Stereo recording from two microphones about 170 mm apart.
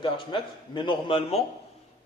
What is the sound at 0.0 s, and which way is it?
A man's voice, 30° left (ahead or behind).